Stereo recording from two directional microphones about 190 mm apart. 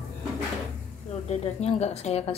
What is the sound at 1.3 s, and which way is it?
Speech, 35° left (ahead or behind).